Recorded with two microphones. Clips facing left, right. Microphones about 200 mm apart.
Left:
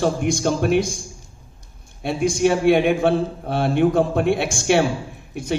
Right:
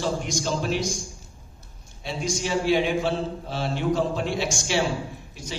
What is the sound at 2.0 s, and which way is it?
A man's voice, 55° left (ahead or behind).